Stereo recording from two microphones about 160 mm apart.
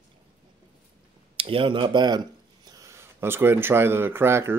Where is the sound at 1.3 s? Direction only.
35° right (ahead or behind).